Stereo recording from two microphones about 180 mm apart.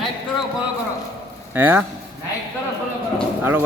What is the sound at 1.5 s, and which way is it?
Speech, 10° right (ahead or behind).